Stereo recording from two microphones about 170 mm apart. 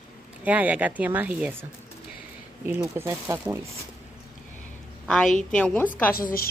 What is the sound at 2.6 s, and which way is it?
Speech, 15° right (ahead or behind).